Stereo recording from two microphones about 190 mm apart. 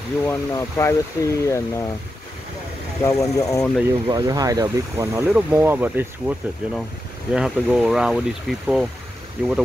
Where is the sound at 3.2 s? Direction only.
15° left (ahead or behind).